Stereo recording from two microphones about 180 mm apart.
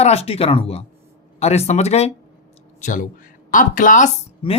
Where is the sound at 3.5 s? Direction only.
50° left (ahead or behind).